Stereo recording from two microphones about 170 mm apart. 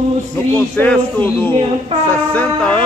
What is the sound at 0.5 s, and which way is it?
A man's voice, 10° left (ahead or behind).